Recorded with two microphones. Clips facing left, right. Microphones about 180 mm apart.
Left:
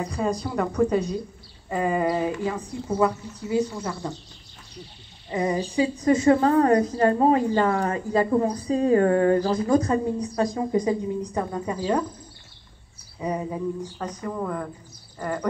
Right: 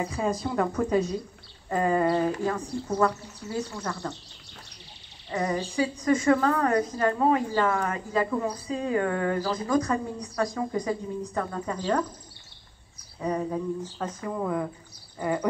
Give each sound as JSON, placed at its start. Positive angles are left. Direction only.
{"t": 0.0, "sound": "a woman's voice", "side_deg": -5}
{"t": 5.3, "sound": "a woman's voice", "side_deg": 20}
{"t": 13.2, "sound": "speech", "side_deg": 10}
{"t": 13.9, "sound": "a woman's voice", "side_deg": -5}
{"t": 15.1, "sound": "a sound", "side_deg": -10}